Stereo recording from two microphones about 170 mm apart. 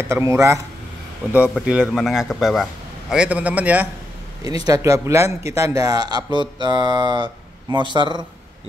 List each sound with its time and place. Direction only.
0.0 s speech: 15° right (ahead or behind)
4.6 s speech: 20° right (ahead or behind)